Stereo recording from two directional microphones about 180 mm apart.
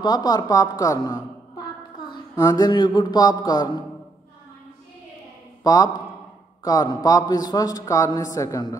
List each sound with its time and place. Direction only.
0.0 s a woman's voice: 20° left (ahead or behind)
5.6 s a man's voice: 20° left (ahead or behind)